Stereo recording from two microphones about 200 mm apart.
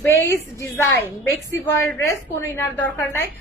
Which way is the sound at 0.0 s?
15° left (ahead or behind).